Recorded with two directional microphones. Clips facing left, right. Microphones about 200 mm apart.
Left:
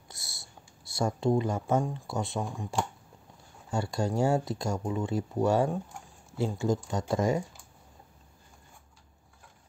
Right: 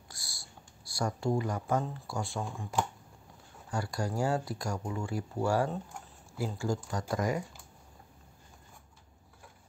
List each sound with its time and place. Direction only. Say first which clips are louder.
0.1 s speech: left 2 dB; 25° left (ahead or behind)
3.7 s speech: left 4 dB; 25° left (ahead or behind)